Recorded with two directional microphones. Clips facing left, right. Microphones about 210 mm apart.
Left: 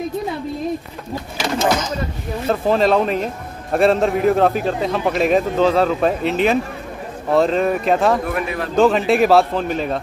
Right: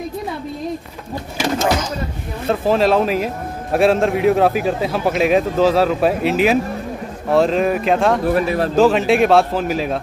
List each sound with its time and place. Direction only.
2.4 s a man's voice: centre (ahead or behind)
8.3 s speech: 35° right (ahead or behind)
8.7 s a man's voice: centre (ahead or behind)